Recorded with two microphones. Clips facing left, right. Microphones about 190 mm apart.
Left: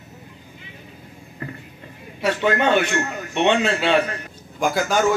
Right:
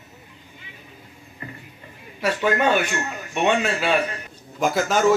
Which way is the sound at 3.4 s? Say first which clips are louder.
Left 2 dB; 25° left (ahead or behind).